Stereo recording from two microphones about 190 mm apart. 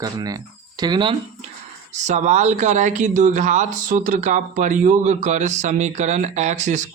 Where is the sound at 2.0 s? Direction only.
40° right (ahead or behind).